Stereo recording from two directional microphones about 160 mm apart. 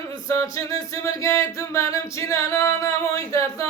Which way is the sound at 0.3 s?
20° left (ahead or behind).